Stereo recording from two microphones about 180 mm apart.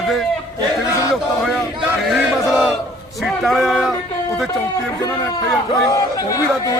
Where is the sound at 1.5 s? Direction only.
Centre (ahead or behind).